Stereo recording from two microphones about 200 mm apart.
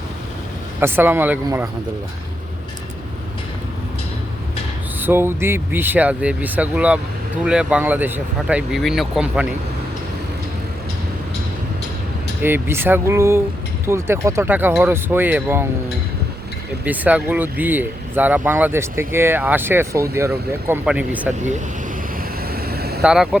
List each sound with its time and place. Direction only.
0.8 s speech: 10° right (ahead or behind)
4.9 s speech: 10° right (ahead or behind)
12.4 s speech: 10° right (ahead or behind)
16.8 s speech: 10° right (ahead or behind)
22.5 s vehicle: 50° right (ahead or behind)
23.0 s speech: 5° right (ahead or behind)